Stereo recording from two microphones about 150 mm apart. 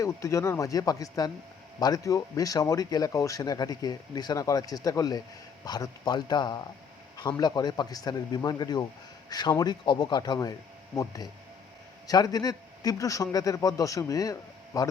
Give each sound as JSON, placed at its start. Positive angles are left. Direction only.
{"t": 0.0, "sound": "speech", "side_deg": 20}